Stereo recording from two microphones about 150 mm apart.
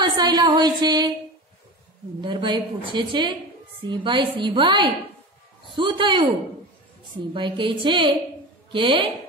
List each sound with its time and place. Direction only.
0.0 s speech: 30° right (ahead or behind)
2.2 s a woman's voice: 30° right (ahead or behind)
7.3 s a woman's voice: 35° right (ahead or behind)